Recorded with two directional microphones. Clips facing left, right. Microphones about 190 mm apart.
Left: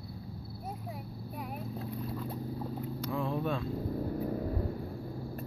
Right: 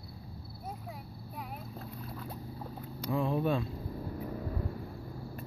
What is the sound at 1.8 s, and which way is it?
Boat, centre (ahead or behind).